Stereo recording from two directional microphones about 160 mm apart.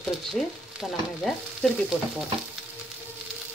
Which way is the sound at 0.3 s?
Centre (ahead or behind).